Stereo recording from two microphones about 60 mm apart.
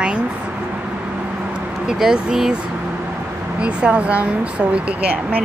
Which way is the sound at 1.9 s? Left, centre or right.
Centre.